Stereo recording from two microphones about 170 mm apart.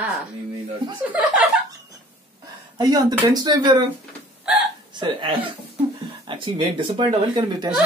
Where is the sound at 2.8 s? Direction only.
20° right (ahead or behind).